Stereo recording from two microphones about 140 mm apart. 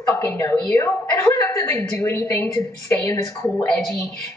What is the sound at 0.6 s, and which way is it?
A woman's voice, 20° left (ahead or behind).